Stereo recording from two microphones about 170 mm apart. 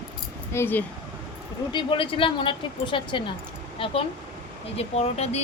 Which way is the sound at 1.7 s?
30° left (ahead or behind).